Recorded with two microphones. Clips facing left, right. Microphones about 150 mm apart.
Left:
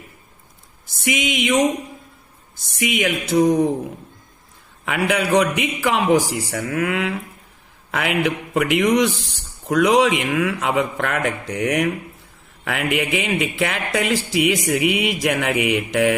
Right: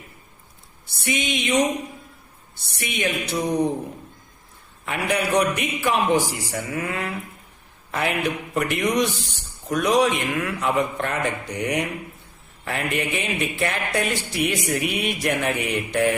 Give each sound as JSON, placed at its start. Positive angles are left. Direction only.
{"t": 0.9, "sound": "speech", "side_deg": 90}
{"t": 2.6, "sound": "speech", "side_deg": 90}
{"t": 4.9, "sound": "speech", "side_deg": 90}
{"t": 6.5, "sound": "speech", "side_deg": 75}